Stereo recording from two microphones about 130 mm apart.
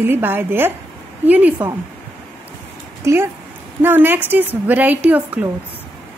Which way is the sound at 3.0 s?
20° right (ahead or behind).